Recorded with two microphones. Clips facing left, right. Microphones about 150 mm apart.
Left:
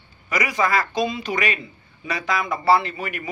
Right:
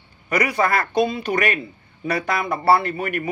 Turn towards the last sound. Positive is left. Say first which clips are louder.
# right 5 dB
turn(degrees=-55)  # may be behind; listen again after turning